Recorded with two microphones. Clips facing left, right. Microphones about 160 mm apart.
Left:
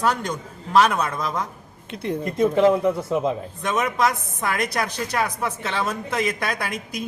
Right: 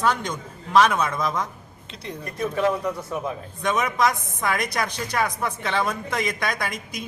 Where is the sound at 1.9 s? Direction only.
55° left (ahead or behind).